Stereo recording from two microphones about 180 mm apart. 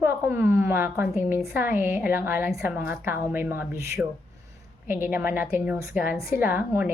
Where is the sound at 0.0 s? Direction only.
10° right (ahead or behind).